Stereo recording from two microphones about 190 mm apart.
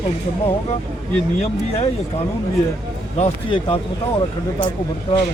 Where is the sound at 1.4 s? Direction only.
35° left (ahead or behind).